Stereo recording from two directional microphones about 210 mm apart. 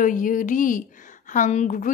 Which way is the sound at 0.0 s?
40° left (ahead or behind).